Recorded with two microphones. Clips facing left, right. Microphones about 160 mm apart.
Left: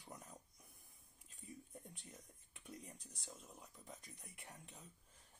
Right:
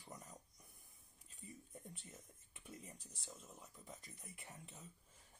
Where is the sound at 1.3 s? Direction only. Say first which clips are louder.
Left 1 dB; centre (ahead or behind).